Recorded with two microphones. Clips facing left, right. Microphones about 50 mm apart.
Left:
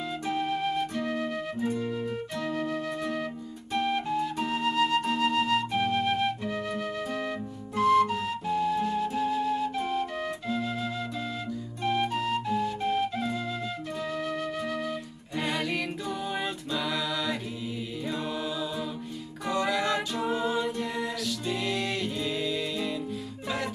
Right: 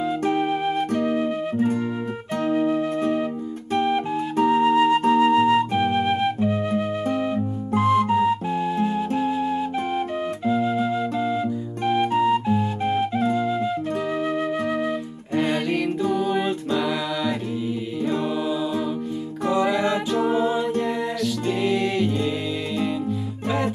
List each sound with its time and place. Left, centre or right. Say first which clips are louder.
0.4 s music: right 6 dB; right
1.0 s flute: right 8 dB; right
1.6 s music: right 7 dB; right
2.4 s flute: right 11 dB; right
3.7 s music: right 5 dB; right
4.4 s flute: right 13 dB; right
7.7 s music: right 4 dB; right
11.8 s flute: right 8 dB; right
15.3 s music: right 7 dB; right
16.1 s a capella: right 10 dB; centre
19.5 s music: right 6 dB; centre
20.1 s a capella: right 8 dB; right
20.3 s music: right 7 dB; centre